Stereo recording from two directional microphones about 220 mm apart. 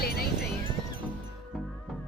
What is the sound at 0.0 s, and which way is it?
Music, 45° left (ahead or behind).